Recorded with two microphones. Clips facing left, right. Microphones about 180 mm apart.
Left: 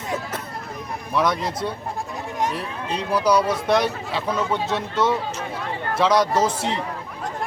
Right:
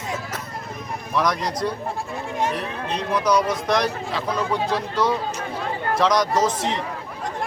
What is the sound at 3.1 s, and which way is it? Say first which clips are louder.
Speech: left 2 dB; 30° left (ahead or behind).